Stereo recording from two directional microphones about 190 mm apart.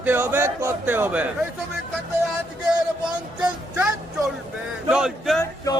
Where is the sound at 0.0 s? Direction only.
10° right (ahead or behind).